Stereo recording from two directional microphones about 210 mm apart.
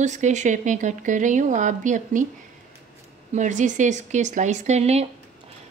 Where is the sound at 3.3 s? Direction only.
35° right (ahead or behind).